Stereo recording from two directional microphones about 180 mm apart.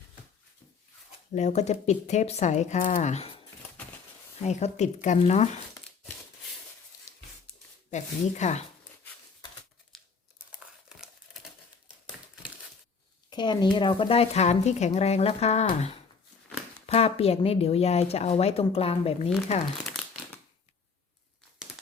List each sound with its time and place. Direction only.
1.3 s speech: 40° left (ahead or behind)
4.4 s speech: 40° left (ahead or behind)
7.9 s speech: 40° left (ahead or behind)
9.9 s crumpling: centre (ahead or behind)
13.3 s speech: 25° left (ahead or behind)
19.8 s crumpling: 5° left (ahead or behind)